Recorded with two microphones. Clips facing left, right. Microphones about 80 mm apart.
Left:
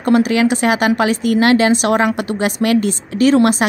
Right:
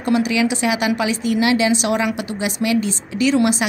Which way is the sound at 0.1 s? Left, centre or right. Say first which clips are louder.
Left 5 dB; left.